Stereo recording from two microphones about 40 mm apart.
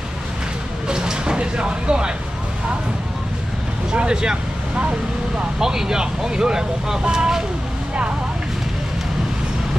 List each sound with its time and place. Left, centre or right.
0.8 s vehicle: centre
3.9 s speech: right
5.6 s speech: centre